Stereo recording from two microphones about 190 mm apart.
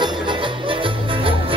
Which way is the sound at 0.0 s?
25° right (ahead or behind).